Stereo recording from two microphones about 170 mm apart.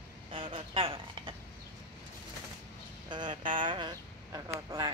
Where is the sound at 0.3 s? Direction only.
30° right (ahead or behind).